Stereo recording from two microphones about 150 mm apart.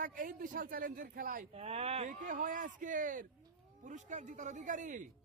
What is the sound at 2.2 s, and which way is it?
Speech, 65° right (ahead or behind).